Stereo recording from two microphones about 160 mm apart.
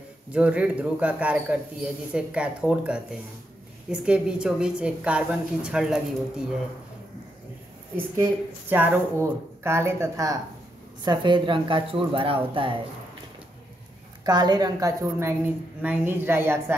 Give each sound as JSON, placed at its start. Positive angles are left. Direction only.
{"t": 0.3, "sound": "a woman's voice", "side_deg": -10}
{"t": 8.6, "sound": "a woman's voice", "side_deg": -10}
{"t": 11.1, "sound": "speech", "side_deg": -30}
{"t": 14.2, "sound": "a woman's voice", "side_deg": -25}